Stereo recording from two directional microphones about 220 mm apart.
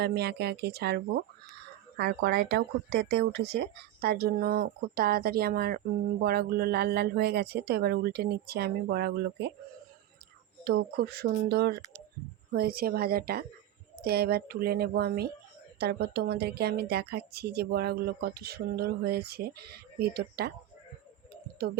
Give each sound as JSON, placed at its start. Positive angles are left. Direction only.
{"t": 0.0, "sound": "a woman's voice", "side_deg": -45}
{"t": 10.6, "sound": "a woman's voice", "side_deg": -50}